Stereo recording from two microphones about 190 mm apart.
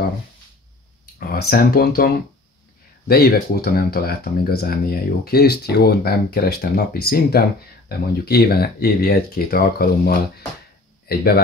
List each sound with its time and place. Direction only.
1.3 s speech: 55° left (ahead or behind)